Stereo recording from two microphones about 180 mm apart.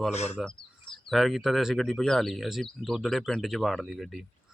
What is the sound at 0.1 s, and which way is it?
Speech, 35° left (ahead or behind).